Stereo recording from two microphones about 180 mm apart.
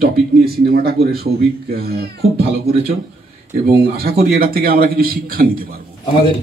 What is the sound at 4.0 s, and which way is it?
Speech, 55° right (ahead or behind).